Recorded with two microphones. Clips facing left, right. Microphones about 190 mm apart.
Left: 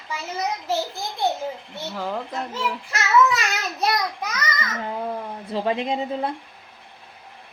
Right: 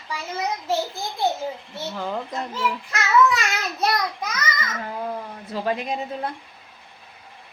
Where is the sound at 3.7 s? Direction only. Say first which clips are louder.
Even; centre (ahead or behind).